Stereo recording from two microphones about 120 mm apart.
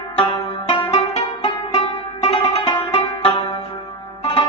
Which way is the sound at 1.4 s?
45° left (ahead or behind).